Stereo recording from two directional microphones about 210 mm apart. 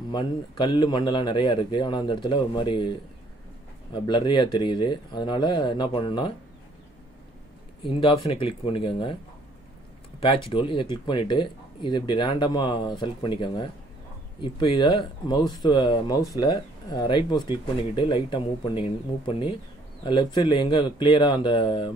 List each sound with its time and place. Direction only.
0.1 s speech: 20° left (ahead or behind)
7.8 s speech: 25° left (ahead or behind)
10.2 s speech: 25° left (ahead or behind)